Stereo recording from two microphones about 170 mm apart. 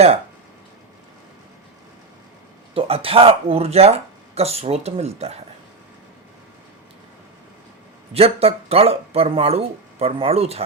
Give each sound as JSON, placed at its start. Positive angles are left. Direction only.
{"t": 2.7, "sound": "speech", "side_deg": -35}
{"t": 8.1, "sound": "speech", "side_deg": -35}